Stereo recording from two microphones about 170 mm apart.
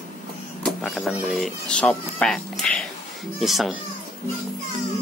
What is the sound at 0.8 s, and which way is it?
Speech, centre (ahead or behind).